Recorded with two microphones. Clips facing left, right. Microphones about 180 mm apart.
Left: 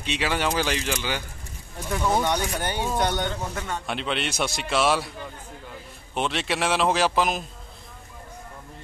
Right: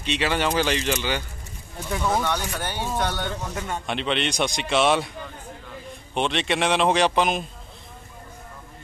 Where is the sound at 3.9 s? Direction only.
5° left (ahead or behind).